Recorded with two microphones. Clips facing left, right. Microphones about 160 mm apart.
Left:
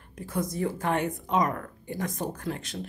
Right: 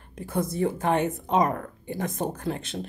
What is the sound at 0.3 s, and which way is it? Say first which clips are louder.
Speech: right 3 dB; 30° right (ahead or behind).